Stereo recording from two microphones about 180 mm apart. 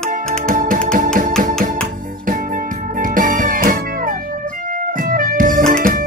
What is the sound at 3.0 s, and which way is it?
Music, 50° right (ahead or behind).